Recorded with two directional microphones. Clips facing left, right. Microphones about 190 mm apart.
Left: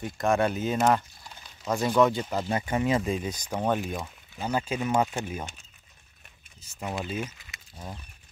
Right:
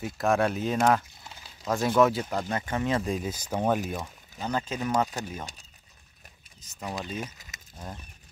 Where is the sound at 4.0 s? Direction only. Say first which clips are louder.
Left 1 dB; 10° left (ahead or behind).